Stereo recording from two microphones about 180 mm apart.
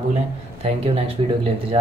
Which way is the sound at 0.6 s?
30° right (ahead or behind).